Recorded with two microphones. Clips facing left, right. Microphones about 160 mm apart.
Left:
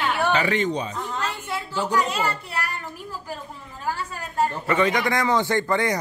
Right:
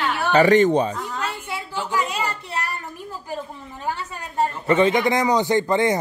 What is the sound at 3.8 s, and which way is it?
A man's voice, 20° right (ahead or behind).